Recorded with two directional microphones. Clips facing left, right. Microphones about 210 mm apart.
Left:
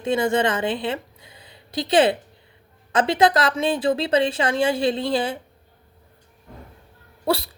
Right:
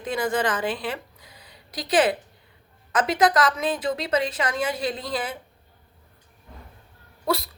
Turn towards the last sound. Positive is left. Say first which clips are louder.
# left 3 dB
turn(degrees=30)  # may be behind; listen again after turning